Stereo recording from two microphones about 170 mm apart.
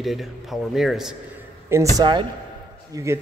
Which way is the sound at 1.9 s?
25° right (ahead or behind).